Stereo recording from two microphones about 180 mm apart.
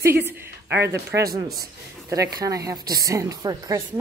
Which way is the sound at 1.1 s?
20° right (ahead or behind).